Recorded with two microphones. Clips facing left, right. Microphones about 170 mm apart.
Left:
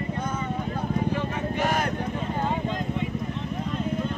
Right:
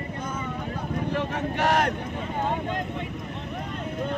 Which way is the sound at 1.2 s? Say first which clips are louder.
Even; 75° right (ahead or behind).